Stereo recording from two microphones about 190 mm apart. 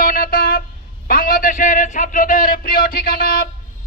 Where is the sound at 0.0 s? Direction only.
50° left (ahead or behind).